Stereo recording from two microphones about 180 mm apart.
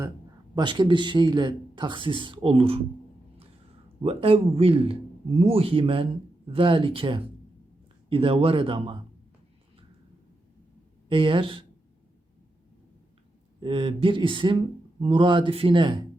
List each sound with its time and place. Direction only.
0.5 s speech: 25° right (ahead or behind)
4.0 s a man's voice: 30° right (ahead or behind)
11.1 s speech: 30° right (ahead or behind)
13.6 s speech: 30° right (ahead or behind)